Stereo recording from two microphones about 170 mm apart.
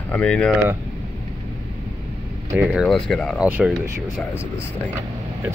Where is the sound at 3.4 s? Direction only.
10° right (ahead or behind).